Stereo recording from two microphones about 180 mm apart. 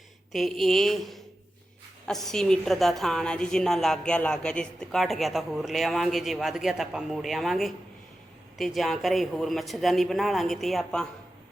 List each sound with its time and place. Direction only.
0.3 s a woman's voice: centre (ahead or behind)